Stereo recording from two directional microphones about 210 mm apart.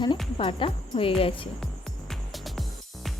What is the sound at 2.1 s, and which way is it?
Music, centre (ahead or behind).